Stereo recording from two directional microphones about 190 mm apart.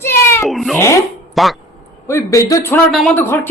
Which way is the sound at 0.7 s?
15° left (ahead or behind).